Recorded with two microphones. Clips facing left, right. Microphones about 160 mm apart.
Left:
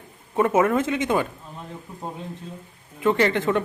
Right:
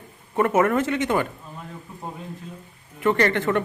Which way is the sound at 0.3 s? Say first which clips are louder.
Even; 10° left (ahead or behind).